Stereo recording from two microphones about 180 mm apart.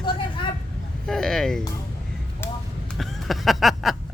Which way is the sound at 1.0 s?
5° left (ahead or behind).